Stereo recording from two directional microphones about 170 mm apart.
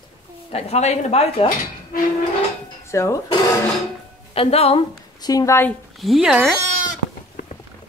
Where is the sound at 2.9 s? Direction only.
15° left (ahead or behind).